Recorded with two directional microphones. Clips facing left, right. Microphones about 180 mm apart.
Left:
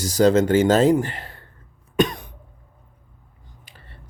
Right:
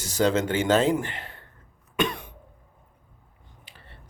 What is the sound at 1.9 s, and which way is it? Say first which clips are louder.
Cough: left 6 dB; 40° left (ahead or behind).